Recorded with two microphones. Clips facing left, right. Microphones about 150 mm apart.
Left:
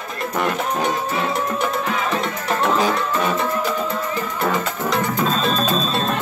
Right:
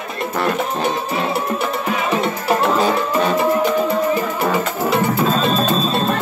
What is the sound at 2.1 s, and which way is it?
Music, 10° right (ahead or behind).